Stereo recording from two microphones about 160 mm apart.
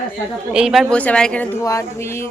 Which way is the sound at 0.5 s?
5° right (ahead or behind).